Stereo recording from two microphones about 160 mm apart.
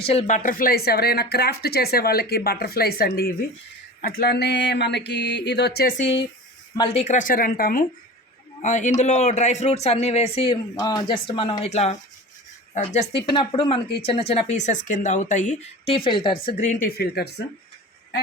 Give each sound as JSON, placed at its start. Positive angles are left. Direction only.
{"t": 0.0, "sound": "speech", "side_deg": 40}
{"t": 4.0, "sound": "a sound", "side_deg": 80}
{"t": 6.7, "sound": "speech", "side_deg": 35}
{"t": 8.6, "sound": "a man's voice", "side_deg": 50}
{"t": 10.8, "sound": "a man's voice", "side_deg": 25}
{"t": 13.3, "sound": "a man's voice", "side_deg": 30}
{"t": 15.9, "sound": "speech", "side_deg": 30}
{"t": 16.8, "sound": "a sound", "side_deg": 90}